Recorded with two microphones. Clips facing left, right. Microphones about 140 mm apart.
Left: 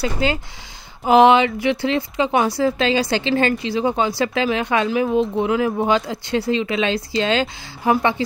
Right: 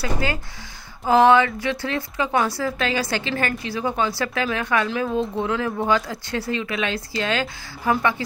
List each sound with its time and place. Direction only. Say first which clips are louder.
0.0 s speech: left 4 dB; 20° left (ahead or behind)